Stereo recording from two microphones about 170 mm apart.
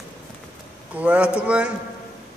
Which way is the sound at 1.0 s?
5° right (ahead or behind).